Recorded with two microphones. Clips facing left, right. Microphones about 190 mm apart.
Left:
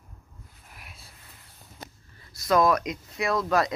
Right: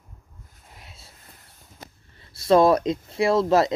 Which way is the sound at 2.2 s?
30° right (ahead or behind).